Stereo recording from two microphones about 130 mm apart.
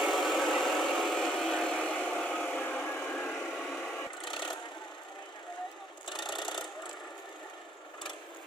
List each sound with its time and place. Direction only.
0.0 s vehicle: centre (ahead or behind)
4.3 s vehicle: 40° left (ahead or behind)
6.3 s a sound: 35° left (ahead or behind)